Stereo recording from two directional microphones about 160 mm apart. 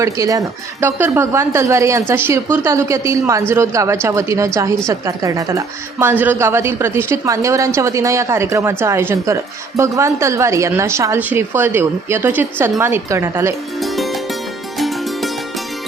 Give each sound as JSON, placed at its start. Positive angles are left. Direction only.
{"t": 0.0, "sound": "a woman's voice", "side_deg": -20}
{"t": 13.7, "sound": "music", "side_deg": 0}